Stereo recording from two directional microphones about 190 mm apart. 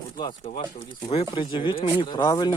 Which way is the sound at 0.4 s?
30° left (ahead or behind).